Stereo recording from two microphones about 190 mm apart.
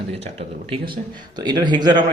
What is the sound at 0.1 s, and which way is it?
Speech, 30° right (ahead or behind).